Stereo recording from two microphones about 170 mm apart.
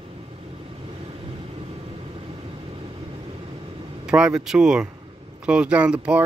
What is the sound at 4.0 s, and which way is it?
Speech, 5° right (ahead or behind).